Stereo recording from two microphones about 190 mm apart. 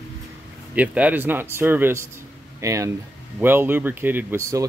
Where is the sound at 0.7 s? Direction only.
10° right (ahead or behind).